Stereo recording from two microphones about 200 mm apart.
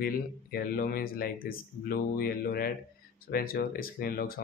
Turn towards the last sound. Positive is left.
turn(degrees=50)  # may be behind; listen again after turning